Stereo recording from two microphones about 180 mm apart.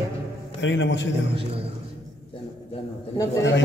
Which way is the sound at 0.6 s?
90° left.